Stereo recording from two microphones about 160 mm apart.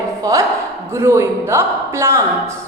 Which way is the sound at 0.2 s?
20° right (ahead or behind).